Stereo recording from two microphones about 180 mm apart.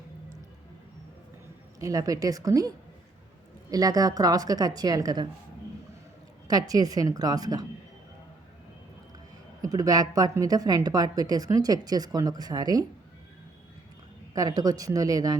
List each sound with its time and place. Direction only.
1.8 s a woman's voice: 20° right (ahead or behind)
6.5 s a woman's voice: 20° right (ahead or behind)
9.6 s a woman's voice: 20° right (ahead or behind)
14.3 s a woman's voice: 20° right (ahead or behind)